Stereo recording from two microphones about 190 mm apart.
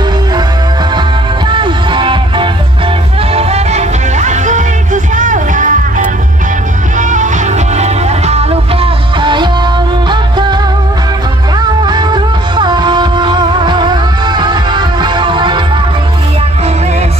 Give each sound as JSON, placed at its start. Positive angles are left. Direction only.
{"t": 1.5, "sound": "music", "side_deg": -25}
{"t": 11.8, "sound": "music", "side_deg": -25}